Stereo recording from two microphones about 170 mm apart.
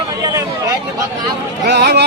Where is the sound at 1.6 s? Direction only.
80° right.